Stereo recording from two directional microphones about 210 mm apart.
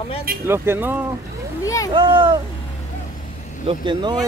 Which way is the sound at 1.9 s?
25° right (ahead or behind).